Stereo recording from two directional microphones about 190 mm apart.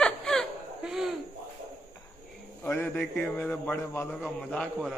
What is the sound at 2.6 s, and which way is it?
A man's voice, 10° left (ahead or behind).